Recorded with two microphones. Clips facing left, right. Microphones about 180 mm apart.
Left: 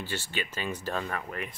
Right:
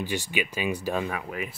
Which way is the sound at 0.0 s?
15° right (ahead or behind).